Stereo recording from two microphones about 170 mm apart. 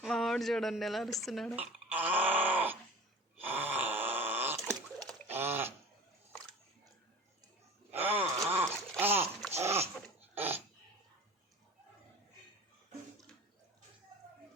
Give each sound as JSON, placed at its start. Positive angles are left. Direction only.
{"t": 0.0, "sound": "speech", "side_deg": 0}
{"t": 3.4, "sound": "groan", "side_deg": -10}
{"t": 5.3, "sound": "a sound", "side_deg": -15}
{"t": 7.9, "sound": "gasp", "side_deg": -10}
{"t": 8.4, "sound": "a sound", "side_deg": -10}
{"t": 9.6, "sound": "dog", "side_deg": -15}